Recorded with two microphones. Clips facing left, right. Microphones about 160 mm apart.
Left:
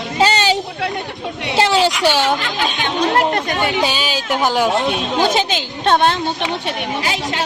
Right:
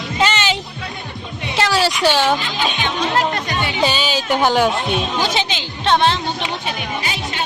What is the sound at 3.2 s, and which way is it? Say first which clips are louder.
Speech: left 3 dB; 50° left (ahead or behind).